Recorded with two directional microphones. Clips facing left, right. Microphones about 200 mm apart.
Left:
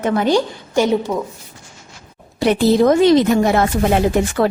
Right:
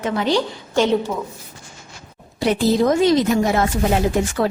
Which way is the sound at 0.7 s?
10° left (ahead or behind).